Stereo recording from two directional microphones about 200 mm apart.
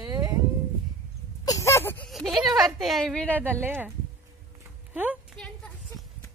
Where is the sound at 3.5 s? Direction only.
10° right (ahead or behind).